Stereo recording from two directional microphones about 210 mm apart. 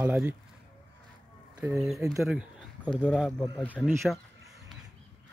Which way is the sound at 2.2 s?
Centre (ahead or behind).